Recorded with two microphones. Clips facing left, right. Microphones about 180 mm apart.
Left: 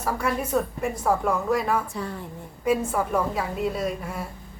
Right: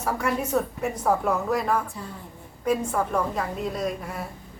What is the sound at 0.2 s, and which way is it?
A woman's voice, centre (ahead or behind).